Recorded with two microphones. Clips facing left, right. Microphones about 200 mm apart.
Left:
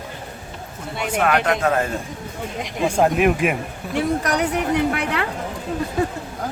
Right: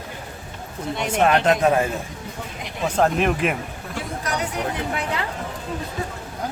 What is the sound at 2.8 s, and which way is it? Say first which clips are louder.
Speech: left 3 dB; 10° left (ahead or behind).